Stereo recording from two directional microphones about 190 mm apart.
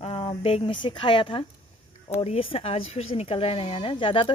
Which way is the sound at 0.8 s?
25° left (ahead or behind).